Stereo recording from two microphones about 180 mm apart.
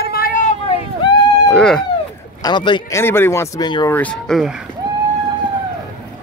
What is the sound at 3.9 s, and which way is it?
Speech, 5° left (ahead or behind).